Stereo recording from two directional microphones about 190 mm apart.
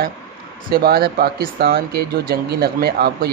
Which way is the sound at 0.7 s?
55° right (ahead or behind).